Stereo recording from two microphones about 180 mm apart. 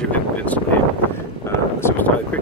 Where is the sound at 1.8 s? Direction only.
10° left (ahead or behind).